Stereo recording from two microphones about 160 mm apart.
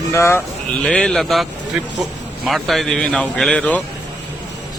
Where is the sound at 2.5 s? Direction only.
Centre (ahead or behind).